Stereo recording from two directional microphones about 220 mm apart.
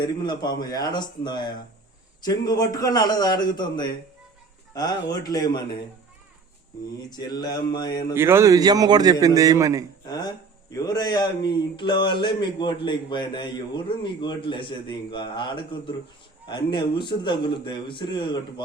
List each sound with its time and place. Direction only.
0.0 s a man's voice: 20° left (ahead or behind)
7.3 s a man's voice: 15° left (ahead or behind)
8.1 s a man's voice: 10° right (ahead or behind)
10.1 s a man's voice: 15° left (ahead or behind)